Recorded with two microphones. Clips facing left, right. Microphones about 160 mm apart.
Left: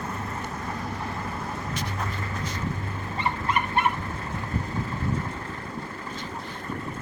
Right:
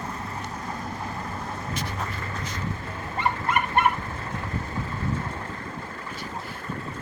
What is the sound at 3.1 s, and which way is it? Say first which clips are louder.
Dog: right 2 dB; 50° right (ahead or behind).